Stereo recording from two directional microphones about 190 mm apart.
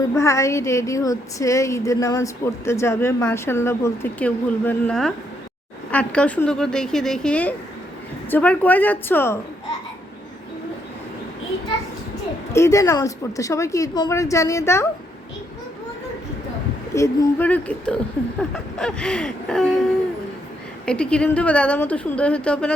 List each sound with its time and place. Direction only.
0.1 s speech: 15° left (ahead or behind)
12.5 s speech: 15° left (ahead or behind)
16.9 s speech: 15° left (ahead or behind)
20.8 s speech: 5° left (ahead or behind)